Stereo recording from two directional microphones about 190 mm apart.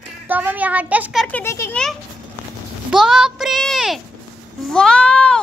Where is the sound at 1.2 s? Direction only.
10° left (ahead or behind).